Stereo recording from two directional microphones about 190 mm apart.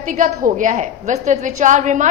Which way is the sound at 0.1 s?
40° right (ahead or behind).